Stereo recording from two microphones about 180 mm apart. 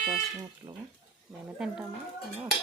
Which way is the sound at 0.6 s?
25° right (ahead or behind).